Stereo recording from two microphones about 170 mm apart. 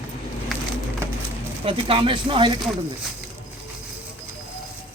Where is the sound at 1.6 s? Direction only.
30° right (ahead or behind).